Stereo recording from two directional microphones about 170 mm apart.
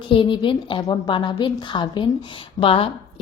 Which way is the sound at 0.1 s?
30° left (ahead or behind).